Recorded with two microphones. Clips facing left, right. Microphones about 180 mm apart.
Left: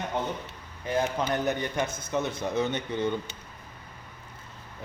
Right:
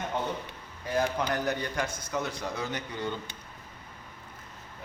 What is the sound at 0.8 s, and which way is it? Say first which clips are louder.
A man's voice: left 1 dB; 20° left (ahead or behind).